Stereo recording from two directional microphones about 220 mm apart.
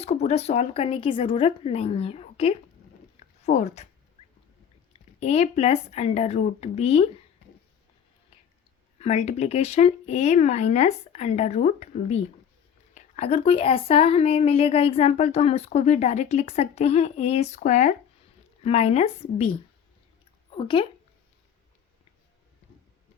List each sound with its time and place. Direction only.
0.0 s speech: 30° left (ahead or behind)
3.2 s a sound: 30° left (ahead or behind)
5.2 s speech: 30° left (ahead or behind)
9.0 s speech: 30° left (ahead or behind)
20.6 s speech: 25° left (ahead or behind)